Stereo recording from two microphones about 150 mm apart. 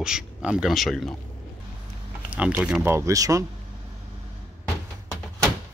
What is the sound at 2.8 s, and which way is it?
Speech, 20° right (ahead or behind).